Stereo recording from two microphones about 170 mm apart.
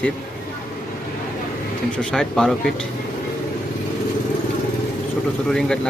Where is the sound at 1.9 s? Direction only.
5° left (ahead or behind).